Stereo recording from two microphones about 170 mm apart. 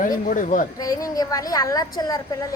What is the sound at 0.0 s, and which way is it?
Speech, 50° left (ahead or behind).